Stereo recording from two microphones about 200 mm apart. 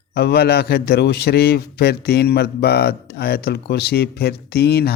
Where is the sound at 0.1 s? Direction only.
55° left (ahead or behind).